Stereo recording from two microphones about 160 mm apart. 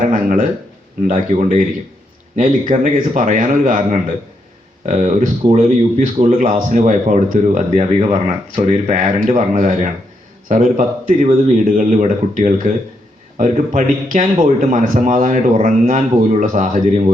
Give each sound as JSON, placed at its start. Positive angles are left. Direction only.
{"t": 0.1, "sound": "speech", "side_deg": -55}
{"t": 4.9, "sound": "speech", "side_deg": -50}